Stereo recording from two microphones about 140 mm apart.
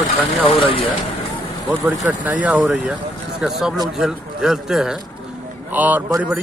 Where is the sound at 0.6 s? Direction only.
40° left (ahead or behind).